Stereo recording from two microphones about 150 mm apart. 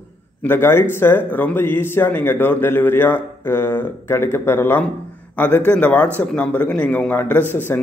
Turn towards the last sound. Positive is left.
turn(degrees=15)  # may be behind; listen again after turning